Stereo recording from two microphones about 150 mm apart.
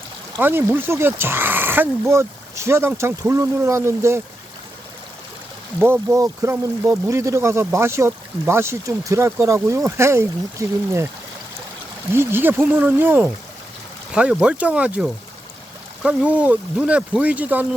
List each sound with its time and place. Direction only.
0.3 s speech: 15° right (ahead or behind)
5.8 s speech: 15° right (ahead or behind)
12.1 s speech: 15° right (ahead or behind)